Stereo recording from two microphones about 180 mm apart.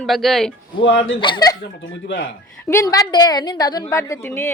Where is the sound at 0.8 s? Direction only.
90° left.